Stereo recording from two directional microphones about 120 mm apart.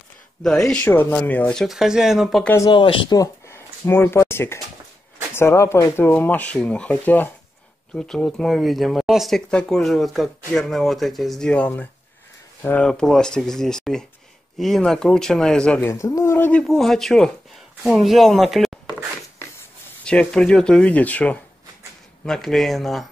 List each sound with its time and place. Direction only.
0.4 s speech: 5° left (ahead or behind)
2.7 s speech: 40° left (ahead or behind)
3.2 s a sound: 20° left (ahead or behind)
5.3 s speech: 20° left (ahead or behind)
15.9 s speech: 25° left (ahead or behind)
16.6 s speech: centre (ahead or behind)
20.1 s speech: 5° left (ahead or behind)